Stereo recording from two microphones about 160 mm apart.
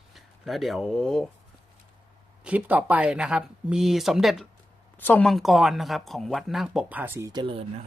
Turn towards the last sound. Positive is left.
turn(degrees=-35)  # may be behind; listen again after turning